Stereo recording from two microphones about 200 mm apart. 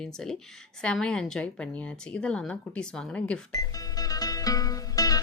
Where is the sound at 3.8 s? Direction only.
20° left (ahead or behind).